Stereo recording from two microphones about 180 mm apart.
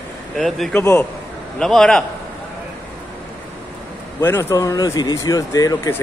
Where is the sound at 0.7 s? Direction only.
15° left (ahead or behind).